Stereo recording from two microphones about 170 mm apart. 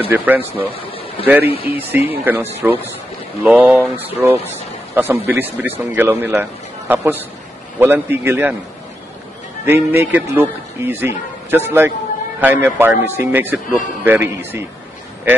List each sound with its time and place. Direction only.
0.1 s a man's voice: 10° right (ahead or behind)
1.2 s speech: 35° left (ahead or behind)
1.7 s a man's voice: 10° right (ahead or behind)
9.7 s a man's voice: 15° right (ahead or behind)